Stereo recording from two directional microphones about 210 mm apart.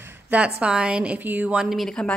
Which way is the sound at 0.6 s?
5° right (ahead or behind).